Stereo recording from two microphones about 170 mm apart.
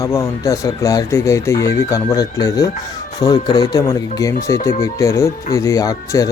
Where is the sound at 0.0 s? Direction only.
15° left (ahead or behind).